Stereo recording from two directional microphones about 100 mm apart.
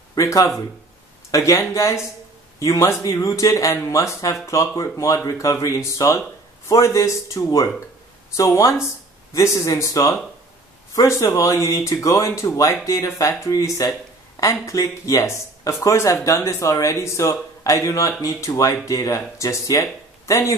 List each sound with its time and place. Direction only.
0.1 s speech: 35° left (ahead or behind)